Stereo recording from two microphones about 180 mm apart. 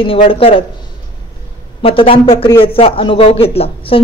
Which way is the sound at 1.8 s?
30° left (ahead or behind).